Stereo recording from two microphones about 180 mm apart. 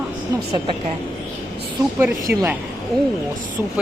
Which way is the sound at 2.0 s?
15° right (ahead or behind).